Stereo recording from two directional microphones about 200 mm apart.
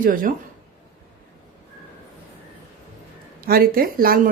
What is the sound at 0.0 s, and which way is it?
Speech, 45° right (ahead or behind).